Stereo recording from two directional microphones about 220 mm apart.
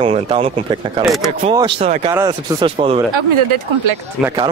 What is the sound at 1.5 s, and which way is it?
Speech, 20° right (ahead or behind).